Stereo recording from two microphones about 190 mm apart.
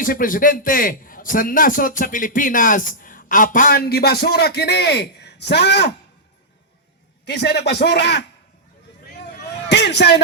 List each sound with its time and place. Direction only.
0.0 s a man's voice: 45° left (ahead or behind); by 5.9 s 60° left (ahead or behind)
7.3 s a man's voice: 60° left (ahead or behind)
9.6 s a sound: 60° left (ahead or behind)